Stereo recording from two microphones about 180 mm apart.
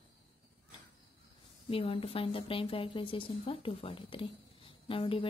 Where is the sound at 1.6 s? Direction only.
30° left (ahead or behind).